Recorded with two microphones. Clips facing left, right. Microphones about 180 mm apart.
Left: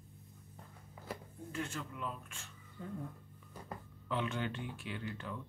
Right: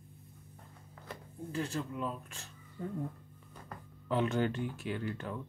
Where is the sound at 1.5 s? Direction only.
35° right (ahead or behind).